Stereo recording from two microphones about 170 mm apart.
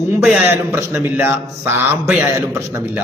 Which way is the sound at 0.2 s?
5° right (ahead or behind).